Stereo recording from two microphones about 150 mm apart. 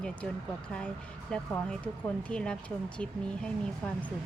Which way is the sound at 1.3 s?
5° left (ahead or behind).